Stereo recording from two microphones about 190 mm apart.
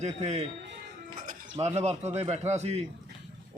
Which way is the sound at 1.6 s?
35° right (ahead or behind).